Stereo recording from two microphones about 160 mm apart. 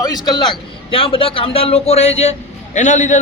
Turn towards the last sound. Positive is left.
turn(degrees=50)  # may be behind; listen again after turning